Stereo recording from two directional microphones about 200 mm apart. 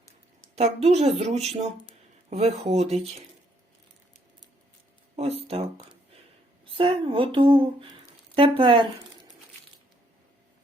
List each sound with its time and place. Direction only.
0.5 s speech: 30° right (ahead or behind)
5.1 s speech: 30° right (ahead or behind)